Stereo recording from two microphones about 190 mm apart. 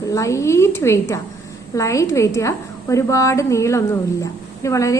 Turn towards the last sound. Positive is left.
turn(degrees=15)  # may be behind; listen again after turning